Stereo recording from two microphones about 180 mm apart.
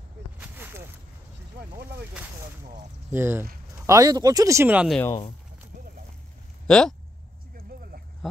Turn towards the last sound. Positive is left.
turn(degrees=5)  # may be behind; listen again after turning